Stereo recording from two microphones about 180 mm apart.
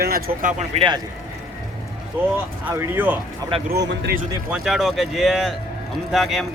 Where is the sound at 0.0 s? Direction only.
55° right (ahead or behind).